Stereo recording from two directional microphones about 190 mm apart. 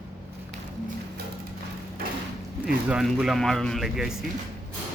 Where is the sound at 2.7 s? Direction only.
5° right (ahead or behind).